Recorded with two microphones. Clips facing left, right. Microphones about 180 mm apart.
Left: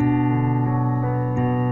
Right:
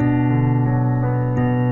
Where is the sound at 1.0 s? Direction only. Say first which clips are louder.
Right 2 dB; 55° right (ahead or behind).